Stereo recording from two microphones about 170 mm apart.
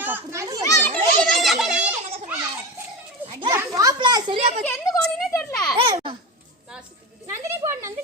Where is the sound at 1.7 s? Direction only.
40° right (ahead or behind).